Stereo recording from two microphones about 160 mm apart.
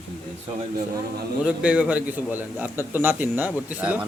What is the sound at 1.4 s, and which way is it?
A man's voice, 5° right (ahead or behind).